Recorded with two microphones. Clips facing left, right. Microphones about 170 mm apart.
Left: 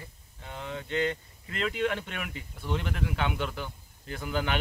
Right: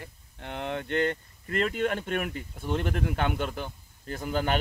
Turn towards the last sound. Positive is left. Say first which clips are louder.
# right 3 dB
turn(degrees=-45)  # may be behind; listen again after turning